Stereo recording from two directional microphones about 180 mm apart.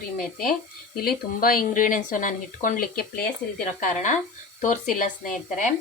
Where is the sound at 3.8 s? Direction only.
45° left (ahead or behind).